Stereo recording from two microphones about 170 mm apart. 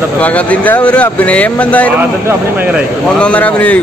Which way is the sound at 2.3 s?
10° right (ahead or behind).